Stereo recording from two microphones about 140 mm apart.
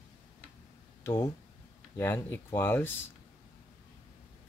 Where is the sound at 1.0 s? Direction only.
15° left (ahead or behind).